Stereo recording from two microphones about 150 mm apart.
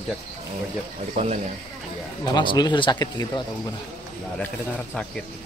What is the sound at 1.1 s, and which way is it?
Speech, 50° right (ahead or behind).